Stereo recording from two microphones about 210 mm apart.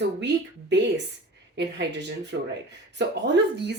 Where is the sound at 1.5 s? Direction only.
55° right (ahead or behind).